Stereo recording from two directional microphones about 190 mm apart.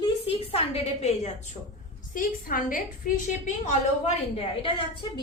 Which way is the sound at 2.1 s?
45° left (ahead or behind).